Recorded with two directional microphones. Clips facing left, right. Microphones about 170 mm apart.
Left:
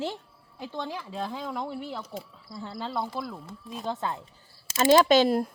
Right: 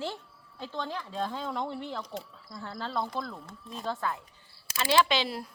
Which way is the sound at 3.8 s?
20° left (ahead or behind).